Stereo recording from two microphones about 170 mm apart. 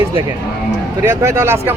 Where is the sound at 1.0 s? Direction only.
15° right (ahead or behind).